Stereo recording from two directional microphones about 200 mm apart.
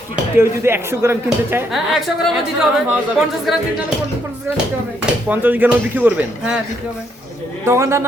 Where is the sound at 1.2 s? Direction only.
Centre (ahead or behind).